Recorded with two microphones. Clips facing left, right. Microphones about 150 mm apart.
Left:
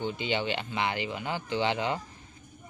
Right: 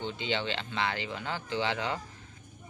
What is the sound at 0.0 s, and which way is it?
Speech, 10° left (ahead or behind).